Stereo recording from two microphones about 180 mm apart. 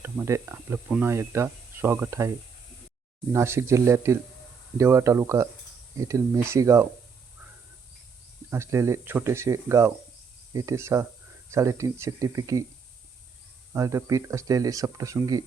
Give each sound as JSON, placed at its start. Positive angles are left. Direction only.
{"t": 0.0, "sound": "speech", "side_deg": -15}
{"t": 3.3, "sound": "speech", "side_deg": -15}
{"t": 8.4, "sound": "speech", "side_deg": -15}
{"t": 13.7, "sound": "speech", "side_deg": -15}